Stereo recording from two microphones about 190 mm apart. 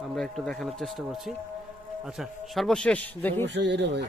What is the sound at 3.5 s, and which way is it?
Speech, 65° right (ahead or behind).